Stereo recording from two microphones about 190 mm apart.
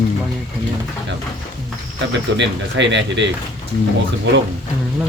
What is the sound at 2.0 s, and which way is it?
Speech, 70° right (ahead or behind).